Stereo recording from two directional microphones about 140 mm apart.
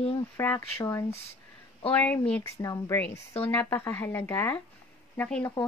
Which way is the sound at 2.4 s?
25° left (ahead or behind).